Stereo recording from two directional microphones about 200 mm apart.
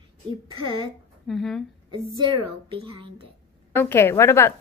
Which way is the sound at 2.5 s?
30° right (ahead or behind).